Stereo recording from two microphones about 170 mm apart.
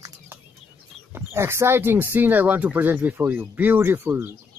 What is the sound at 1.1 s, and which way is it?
Speech, 15° right (ahead or behind).